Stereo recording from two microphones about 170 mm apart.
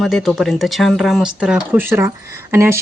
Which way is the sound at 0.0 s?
Centre (ahead or behind).